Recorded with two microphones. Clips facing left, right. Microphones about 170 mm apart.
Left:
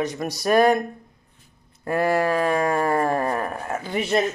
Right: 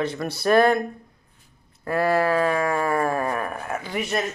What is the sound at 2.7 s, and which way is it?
Speech, 30° left (ahead or behind).